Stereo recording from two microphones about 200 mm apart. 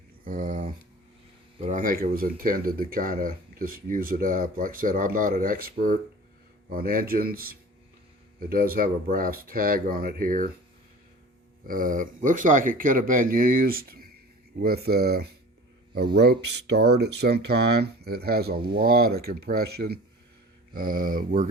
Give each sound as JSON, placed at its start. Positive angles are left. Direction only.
{"t": 0.3, "sound": "speech", "side_deg": -40}
{"t": 11.6, "sound": "speech", "side_deg": -45}